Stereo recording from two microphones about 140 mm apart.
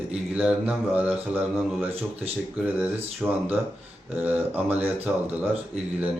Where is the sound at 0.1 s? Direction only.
5° right (ahead or behind).